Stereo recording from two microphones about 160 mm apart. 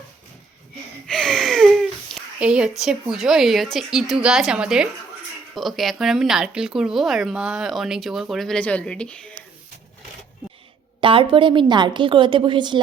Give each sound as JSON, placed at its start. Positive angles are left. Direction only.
{"t": 1.0, "sound": "speech", "side_deg": 5}
{"t": 11.0, "sound": "a woman's voice", "side_deg": -35}